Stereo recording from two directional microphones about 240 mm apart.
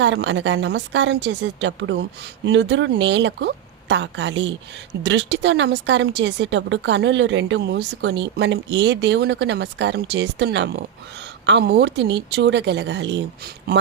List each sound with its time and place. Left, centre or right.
0.0 s speech: right